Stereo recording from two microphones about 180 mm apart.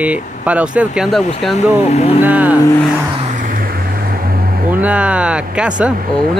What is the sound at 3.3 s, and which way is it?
Vehicle, 50° right (ahead or behind).